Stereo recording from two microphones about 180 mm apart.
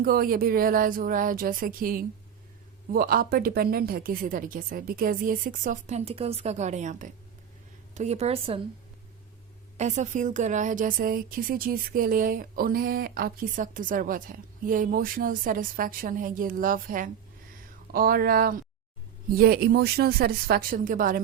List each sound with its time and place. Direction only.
0.0 s a woman's voice: 55° right (ahead or behind); by 8.6 s 30° right (ahead or behind)
9.7 s a woman's voice: 40° right (ahead or behind)